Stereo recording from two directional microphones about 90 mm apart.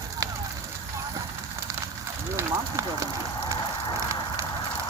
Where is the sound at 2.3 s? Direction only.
35° right (ahead or behind).